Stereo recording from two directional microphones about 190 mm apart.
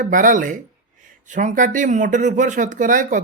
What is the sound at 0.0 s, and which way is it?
Speech, 45° right (ahead or behind).